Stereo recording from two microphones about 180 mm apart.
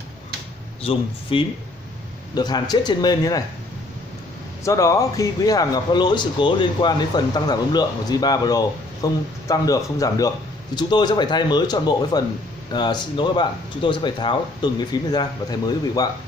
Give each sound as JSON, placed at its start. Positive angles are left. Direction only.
{"t": 1.3, "sound": "a man's voice", "side_deg": 30}
{"t": 4.6, "sound": "a man's voice", "side_deg": 15}